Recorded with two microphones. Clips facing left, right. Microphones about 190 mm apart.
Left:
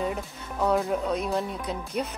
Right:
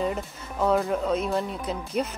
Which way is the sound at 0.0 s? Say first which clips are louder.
Right 2 dB; centre (ahead or behind).